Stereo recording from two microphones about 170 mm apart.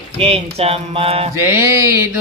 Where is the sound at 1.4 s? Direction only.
15° right (ahead or behind).